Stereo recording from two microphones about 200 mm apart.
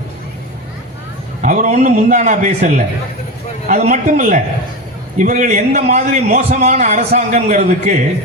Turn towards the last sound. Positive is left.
turn(degrees=-35)  # may be behind; listen again after turning